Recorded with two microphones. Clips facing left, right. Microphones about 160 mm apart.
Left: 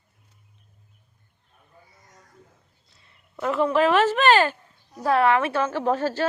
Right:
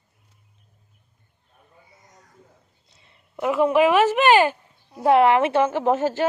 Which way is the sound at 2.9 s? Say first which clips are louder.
Right 2 dB; 20° right (ahead or behind).